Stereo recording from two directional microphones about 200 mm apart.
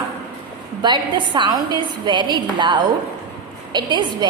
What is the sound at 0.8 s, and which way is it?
A woman's voice, 20° right (ahead or behind).